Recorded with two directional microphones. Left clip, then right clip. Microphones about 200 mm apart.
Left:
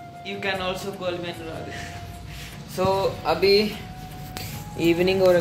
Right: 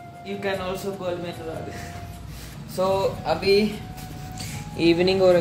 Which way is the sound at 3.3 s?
25° left (ahead or behind).